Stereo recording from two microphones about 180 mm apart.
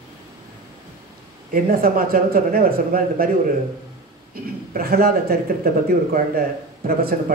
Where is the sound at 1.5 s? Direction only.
50° right (ahead or behind).